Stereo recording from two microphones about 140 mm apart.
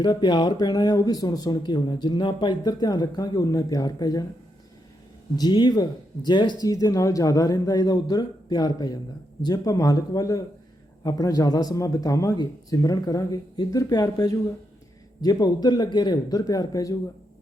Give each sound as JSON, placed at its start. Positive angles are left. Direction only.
{"t": 0.0, "sound": "speech", "side_deg": 30}
{"t": 5.4, "sound": "speech", "side_deg": 30}